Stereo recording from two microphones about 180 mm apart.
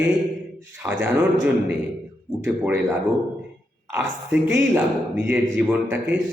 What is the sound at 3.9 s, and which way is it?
A man's voice, 15° right (ahead or behind).